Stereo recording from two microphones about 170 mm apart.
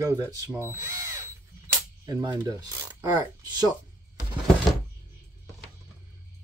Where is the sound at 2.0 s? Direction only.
25° right (ahead or behind).